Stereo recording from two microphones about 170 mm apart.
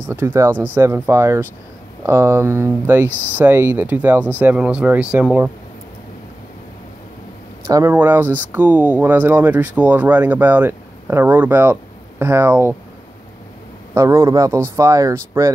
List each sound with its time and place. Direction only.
0.0 s speech: 15° right (ahead or behind)
7.6 s speech: 15° right (ahead or behind)
13.9 s speech: 15° right (ahead or behind)